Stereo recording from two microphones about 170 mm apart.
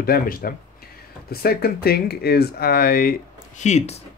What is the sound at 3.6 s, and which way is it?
Speech, 40° left (ahead or behind).